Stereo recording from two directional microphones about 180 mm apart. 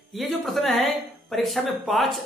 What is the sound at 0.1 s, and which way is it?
Speech, centre (ahead or behind).